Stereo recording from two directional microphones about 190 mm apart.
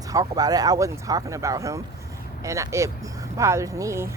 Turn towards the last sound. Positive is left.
turn(degrees=-15)  # may be behind; listen again after turning